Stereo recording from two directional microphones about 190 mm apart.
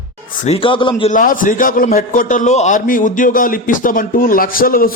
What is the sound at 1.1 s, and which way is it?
A man's voice, 45° left (ahead or behind).